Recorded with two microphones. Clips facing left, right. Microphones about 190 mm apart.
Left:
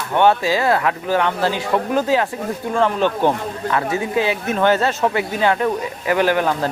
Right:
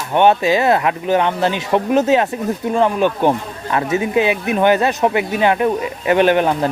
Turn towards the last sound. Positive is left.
turn(degrees=-20)  # may be behind; listen again after turning